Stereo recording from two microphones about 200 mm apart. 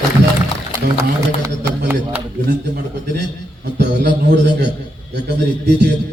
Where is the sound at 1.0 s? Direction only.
15° right (ahead or behind).